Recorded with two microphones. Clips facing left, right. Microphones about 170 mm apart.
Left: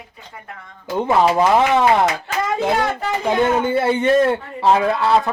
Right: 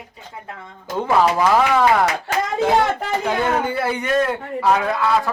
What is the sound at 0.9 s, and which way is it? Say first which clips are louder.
A man's voice: left 2 dB; 20° left (ahead or behind).